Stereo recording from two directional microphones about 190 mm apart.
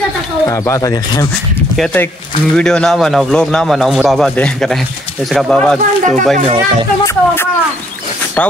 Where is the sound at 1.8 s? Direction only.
10° left (ahead or behind).